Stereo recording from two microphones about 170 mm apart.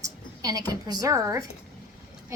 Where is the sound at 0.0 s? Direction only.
20° right (ahead or behind).